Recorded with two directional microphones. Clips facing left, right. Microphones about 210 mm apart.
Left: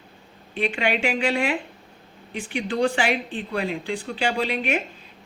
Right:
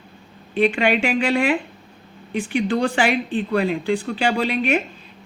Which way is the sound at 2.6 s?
55° right (ahead or behind).